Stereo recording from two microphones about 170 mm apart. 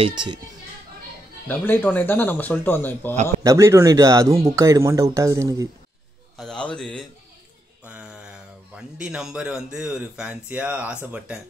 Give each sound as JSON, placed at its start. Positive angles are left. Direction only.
{"t": 0.0, "sound": "speech", "side_deg": -25}
{"t": 1.5, "sound": "speech", "side_deg": 10}
{"t": 3.4, "sound": "speech", "side_deg": -15}
{"t": 6.3, "sound": "a sound", "side_deg": 5}
{"t": 7.8, "sound": "a sound", "side_deg": -10}
{"t": 8.7, "sound": "speech", "side_deg": -5}